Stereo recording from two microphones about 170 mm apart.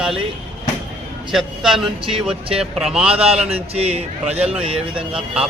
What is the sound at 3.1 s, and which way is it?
Speech, 35° right (ahead or behind).